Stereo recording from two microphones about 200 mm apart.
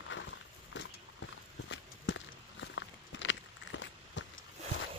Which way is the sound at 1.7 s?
65° left (ahead or behind).